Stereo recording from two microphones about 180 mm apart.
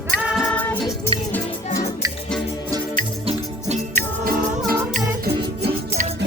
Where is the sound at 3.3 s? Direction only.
40° right (ahead or behind).